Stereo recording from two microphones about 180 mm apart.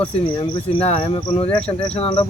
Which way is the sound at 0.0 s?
25° left (ahead or behind).